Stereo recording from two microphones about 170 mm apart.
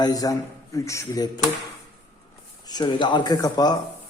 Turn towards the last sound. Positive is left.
turn(degrees=25)  # may be behind; listen again after turning